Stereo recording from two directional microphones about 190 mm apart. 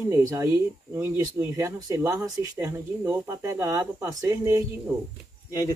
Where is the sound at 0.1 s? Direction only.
20° right (ahead or behind).